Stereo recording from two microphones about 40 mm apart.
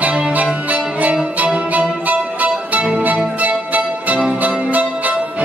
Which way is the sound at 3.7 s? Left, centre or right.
Right.